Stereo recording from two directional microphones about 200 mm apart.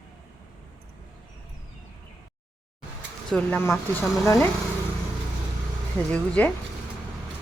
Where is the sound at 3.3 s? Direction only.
10° left (ahead or behind).